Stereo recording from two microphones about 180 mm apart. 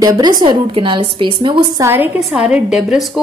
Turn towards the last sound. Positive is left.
turn(degrees=-5)  # may be behind; listen again after turning